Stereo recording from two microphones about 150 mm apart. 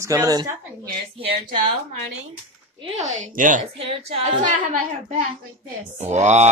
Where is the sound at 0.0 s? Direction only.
20° right (ahead or behind).